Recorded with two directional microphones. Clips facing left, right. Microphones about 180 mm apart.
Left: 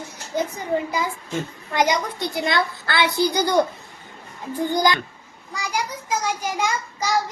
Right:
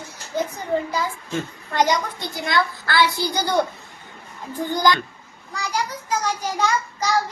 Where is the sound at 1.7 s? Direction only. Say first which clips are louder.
Even; 20° left (ahead or behind).